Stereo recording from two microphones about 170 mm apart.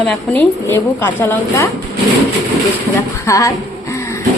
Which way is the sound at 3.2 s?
20° left (ahead or behind).